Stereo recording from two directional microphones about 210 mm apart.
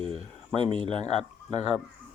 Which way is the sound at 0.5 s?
25° right (ahead or behind).